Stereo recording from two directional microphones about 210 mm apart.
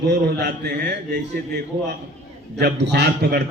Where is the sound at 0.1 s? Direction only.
55° right (ahead or behind).